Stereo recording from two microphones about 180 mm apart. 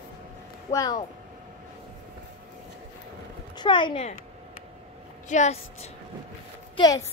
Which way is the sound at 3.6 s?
25° left (ahead or behind).